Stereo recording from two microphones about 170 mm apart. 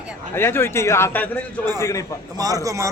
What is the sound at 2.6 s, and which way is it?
Speech, 20° right (ahead or behind).